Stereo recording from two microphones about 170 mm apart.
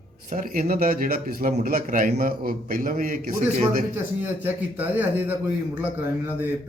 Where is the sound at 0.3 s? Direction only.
50° right (ahead or behind).